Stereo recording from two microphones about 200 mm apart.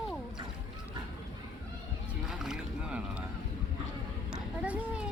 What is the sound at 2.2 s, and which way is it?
Boat, centre (ahead or behind).